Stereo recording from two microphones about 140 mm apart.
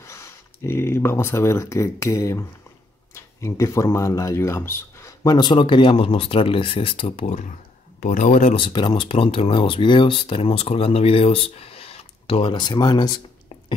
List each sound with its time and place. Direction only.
0.0 s speech: 20° left (ahead or behind); by 7.5 s 55° left (ahead or behind)
8.0 s speech: 65° left (ahead or behind)
8.5 s speech: 35° left (ahead or behind)